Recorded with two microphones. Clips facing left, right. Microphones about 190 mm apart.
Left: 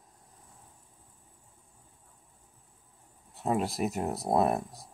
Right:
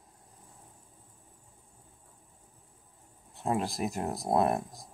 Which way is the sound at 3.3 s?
5° left (ahead or behind).